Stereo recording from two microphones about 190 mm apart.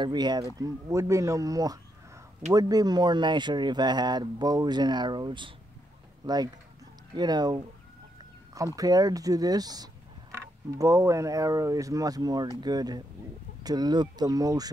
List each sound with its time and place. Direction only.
0.0 s speech: 20° right (ahead or behind)
8.7 s speech: 20° right (ahead or behind)